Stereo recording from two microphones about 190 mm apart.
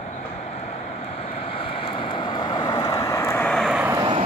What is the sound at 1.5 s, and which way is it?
Vehicle, 30° left (ahead or behind).